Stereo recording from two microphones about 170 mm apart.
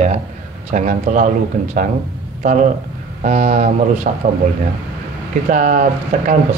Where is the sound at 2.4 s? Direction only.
50° right (ahead or behind).